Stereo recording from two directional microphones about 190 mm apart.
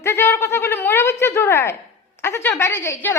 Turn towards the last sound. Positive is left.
turn(degrees=15)  # may be behind; listen again after turning